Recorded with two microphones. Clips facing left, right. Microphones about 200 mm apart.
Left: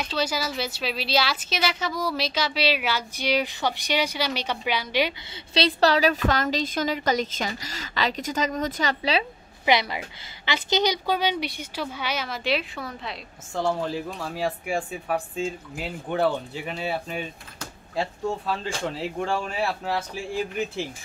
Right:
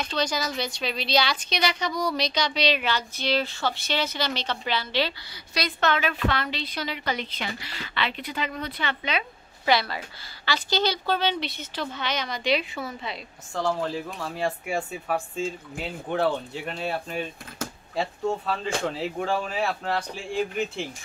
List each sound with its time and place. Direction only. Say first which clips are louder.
0.0 s a woman's voice: even; 5° left (ahead or behind)
5.5 s a woman's voice: left 5 dB; 30° left (ahead or behind)
9.7 s a woman's voice: left 1 dB; 15° left (ahead or behind)